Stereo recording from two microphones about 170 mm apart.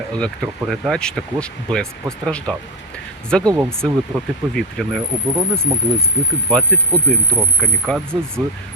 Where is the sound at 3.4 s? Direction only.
20° right (ahead or behind).